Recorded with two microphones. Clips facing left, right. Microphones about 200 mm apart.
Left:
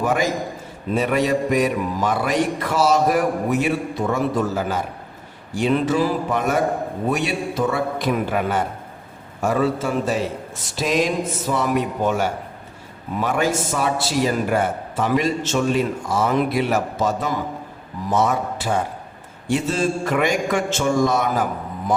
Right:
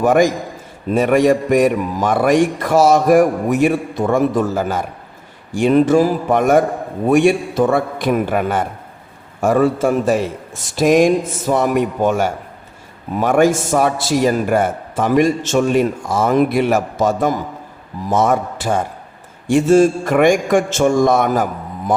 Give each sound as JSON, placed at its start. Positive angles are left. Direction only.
{"t": 0.0, "sound": "a man's voice", "side_deg": -50}